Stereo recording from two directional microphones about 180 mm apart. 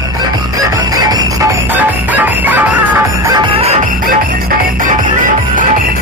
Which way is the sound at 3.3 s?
25° right (ahead or behind).